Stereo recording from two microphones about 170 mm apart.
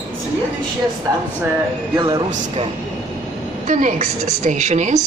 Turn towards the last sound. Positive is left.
turn(degrees=-45)  # may be behind; listen again after turning